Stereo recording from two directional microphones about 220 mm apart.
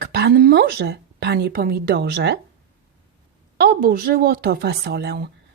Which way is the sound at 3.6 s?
45° right (ahead or behind).